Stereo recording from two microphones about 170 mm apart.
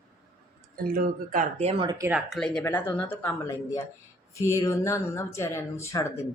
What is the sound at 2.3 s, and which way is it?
Speech, 5° left (ahead or behind).